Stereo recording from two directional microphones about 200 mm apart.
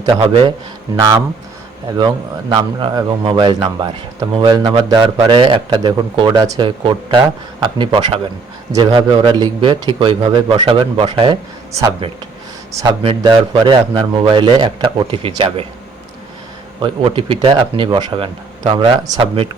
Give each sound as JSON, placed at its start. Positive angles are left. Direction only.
{"t": 0.0, "sound": "a man's voice", "side_deg": -25}
{"t": 2.0, "sound": "a man's voice", "side_deg": -25}
{"t": 16.8, "sound": "a man's voice", "side_deg": -25}